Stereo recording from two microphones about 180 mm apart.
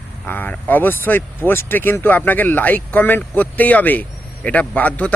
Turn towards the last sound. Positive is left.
turn(degrees=10)  # may be behind; listen again after turning